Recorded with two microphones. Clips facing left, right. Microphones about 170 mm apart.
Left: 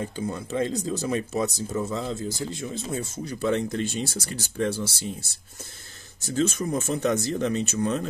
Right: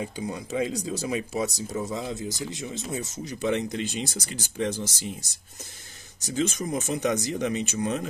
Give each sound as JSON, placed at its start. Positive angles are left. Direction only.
{"t": 0.0, "sound": "speech", "side_deg": -15}